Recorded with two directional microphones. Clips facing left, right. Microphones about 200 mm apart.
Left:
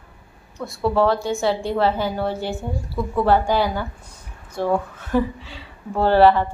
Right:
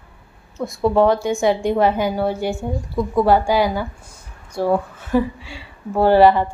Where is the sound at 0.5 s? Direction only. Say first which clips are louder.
Right 3 dB; 20° right (ahead or behind).